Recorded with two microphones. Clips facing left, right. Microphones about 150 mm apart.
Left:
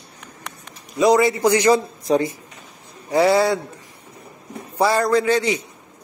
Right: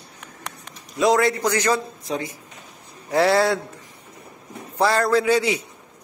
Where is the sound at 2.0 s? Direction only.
40° left (ahead or behind).